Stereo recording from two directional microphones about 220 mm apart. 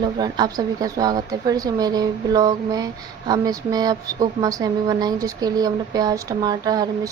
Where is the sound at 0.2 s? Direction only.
20° right (ahead or behind).